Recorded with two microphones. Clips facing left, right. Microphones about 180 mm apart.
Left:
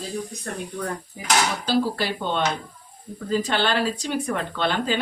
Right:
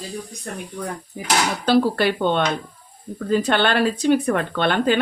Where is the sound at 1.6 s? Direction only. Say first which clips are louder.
Right 6 dB; 60° right (ahead or behind).